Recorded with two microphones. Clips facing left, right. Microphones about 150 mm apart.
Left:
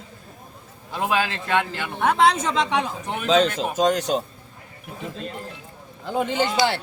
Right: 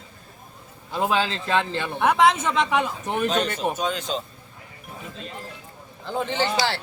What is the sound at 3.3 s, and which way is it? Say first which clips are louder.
Speech: left 5 dB; 90° left.